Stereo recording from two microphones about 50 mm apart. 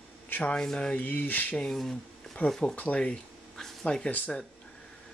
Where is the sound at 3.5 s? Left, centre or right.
Centre.